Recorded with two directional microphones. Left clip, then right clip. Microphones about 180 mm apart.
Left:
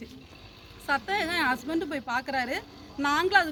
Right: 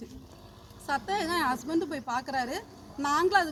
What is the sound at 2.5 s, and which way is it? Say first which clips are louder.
Speech: left 3 dB; 20° left (ahead or behind).